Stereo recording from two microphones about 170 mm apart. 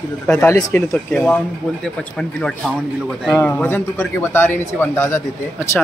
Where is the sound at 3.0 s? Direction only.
5° left (ahead or behind).